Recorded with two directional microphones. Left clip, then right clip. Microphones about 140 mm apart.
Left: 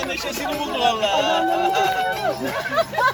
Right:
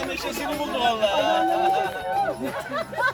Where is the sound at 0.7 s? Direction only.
25° left (ahead or behind).